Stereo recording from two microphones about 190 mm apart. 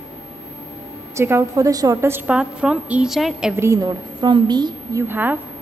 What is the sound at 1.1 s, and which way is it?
A woman's voice, 15° right (ahead or behind).